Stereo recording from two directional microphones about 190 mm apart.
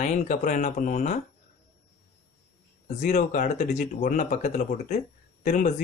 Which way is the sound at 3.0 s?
40° left (ahead or behind).